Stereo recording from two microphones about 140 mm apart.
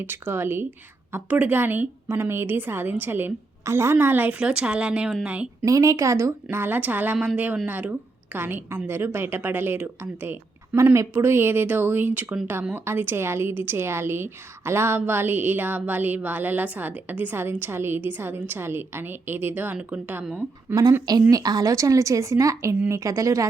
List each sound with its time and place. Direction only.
0.0 s a woman's voice: 15° right (ahead or behind)
5.6 s a woman's voice: 25° right (ahead or behind)
21.1 s a woman's voice: 25° right (ahead or behind)